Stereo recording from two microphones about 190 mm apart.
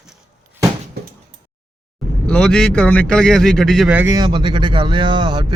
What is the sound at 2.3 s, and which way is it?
Speech, 5° left (ahead or behind).